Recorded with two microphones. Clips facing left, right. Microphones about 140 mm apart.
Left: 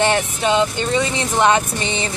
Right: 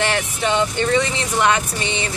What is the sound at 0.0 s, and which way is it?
Speech, 20° left (ahead or behind).